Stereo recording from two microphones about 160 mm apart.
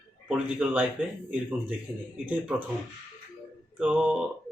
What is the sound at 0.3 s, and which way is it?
Speech, 5° right (ahead or behind).